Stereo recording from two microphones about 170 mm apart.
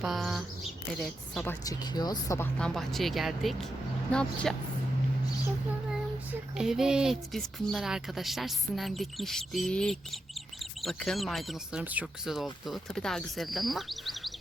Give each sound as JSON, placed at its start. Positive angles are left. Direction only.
{"t": 0.0, "sound": "speech", "side_deg": 0}
{"t": 1.5, "sound": "speech", "side_deg": 20}
{"t": 2.6, "sound": "speech", "side_deg": 5}
{"t": 6.3, "sound": "speech", "side_deg": -5}